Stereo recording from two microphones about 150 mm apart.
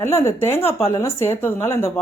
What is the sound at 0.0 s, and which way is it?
Speech, 15° left (ahead or behind).